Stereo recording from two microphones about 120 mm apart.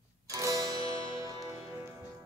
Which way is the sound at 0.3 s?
25° right (ahead or behind).